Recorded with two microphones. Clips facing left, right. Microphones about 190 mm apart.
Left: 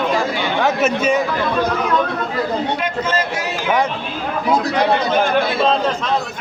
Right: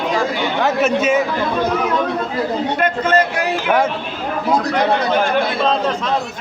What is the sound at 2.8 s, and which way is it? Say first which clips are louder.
Speech: right 4 dB; 60° right (ahead or behind).